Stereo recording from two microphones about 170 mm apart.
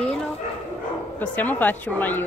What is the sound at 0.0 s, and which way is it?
Bow-wow, 5° left (ahead or behind).